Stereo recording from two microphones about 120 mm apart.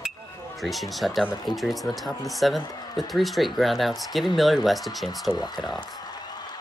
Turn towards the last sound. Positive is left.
turn(degrees=0)  # may be behind; listen again after turning